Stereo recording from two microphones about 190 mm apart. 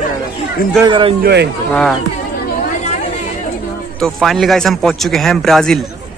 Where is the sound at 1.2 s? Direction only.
60° right (ahead or behind).